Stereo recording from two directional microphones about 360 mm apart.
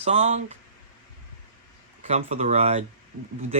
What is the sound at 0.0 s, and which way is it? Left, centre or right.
Speech, centre.